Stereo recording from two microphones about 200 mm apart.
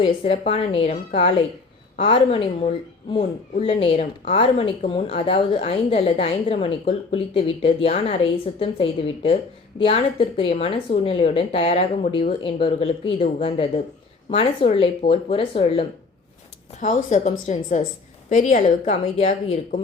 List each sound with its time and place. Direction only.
0.0 s speech: 30° left (ahead or behind)
3.6 s a woman's voice: 30° left (ahead or behind)